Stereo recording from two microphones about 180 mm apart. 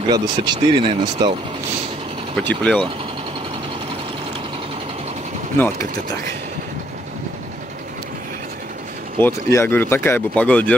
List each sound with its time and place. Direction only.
0.1 s speech: 25° right (ahead or behind)
2.3 s speech: 5° left (ahead or behind)
5.6 s speech: 20° left (ahead or behind)
9.2 s speech: 15° left (ahead or behind)